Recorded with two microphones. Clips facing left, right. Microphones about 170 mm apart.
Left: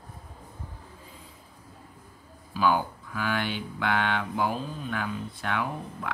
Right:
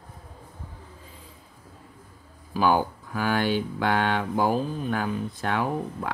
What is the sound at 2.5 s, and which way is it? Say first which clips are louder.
Speech: right 3 dB; 40° right (ahead or behind).